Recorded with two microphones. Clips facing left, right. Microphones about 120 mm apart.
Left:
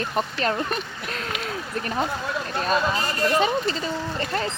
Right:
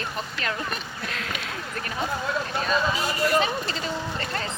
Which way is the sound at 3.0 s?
10° right (ahead or behind).